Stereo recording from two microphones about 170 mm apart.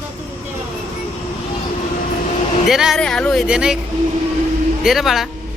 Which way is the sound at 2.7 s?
Centre (ahead or behind).